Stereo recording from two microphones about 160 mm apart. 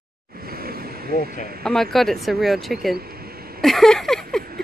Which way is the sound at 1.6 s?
Centre (ahead or behind).